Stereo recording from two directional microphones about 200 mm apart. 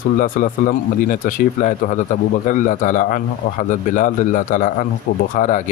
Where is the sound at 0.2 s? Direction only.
40° left (ahead or behind).